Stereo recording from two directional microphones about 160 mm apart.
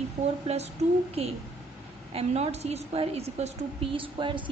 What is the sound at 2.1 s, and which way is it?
A woman's voice, 40° right (ahead or behind).